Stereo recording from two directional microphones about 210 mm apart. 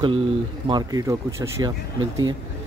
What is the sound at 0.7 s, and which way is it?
Speech, 20° right (ahead or behind).